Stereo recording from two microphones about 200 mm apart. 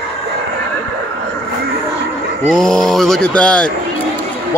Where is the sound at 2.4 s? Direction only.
5° left (ahead or behind).